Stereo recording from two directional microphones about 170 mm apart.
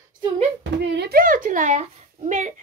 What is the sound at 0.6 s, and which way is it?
A child's voice, 70° right (ahead or behind).